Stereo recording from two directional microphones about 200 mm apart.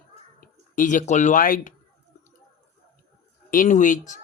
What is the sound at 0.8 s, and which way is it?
Speech, 40° left (ahead or behind).